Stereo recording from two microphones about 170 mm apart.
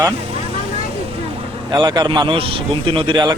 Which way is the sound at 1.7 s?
20° right (ahead or behind).